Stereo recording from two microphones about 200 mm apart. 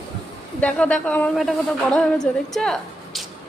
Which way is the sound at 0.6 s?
5° left (ahead or behind).